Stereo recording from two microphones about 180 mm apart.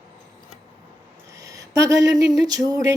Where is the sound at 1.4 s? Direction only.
20° right (ahead or behind).